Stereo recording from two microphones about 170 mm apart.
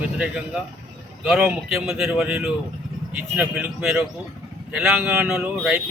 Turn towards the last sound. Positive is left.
turn(degrees=-5)  # may be behind; listen again after turning